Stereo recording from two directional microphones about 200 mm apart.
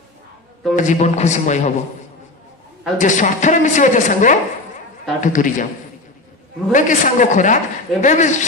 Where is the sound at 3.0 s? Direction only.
40° left (ahead or behind).